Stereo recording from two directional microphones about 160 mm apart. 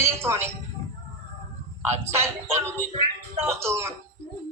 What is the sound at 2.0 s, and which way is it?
A man's voice, 15° right (ahead or behind).